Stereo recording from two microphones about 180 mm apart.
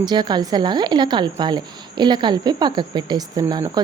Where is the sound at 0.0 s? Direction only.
25° right (ahead or behind).